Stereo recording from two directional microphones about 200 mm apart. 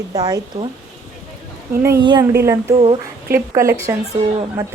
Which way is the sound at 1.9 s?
20° right (ahead or behind).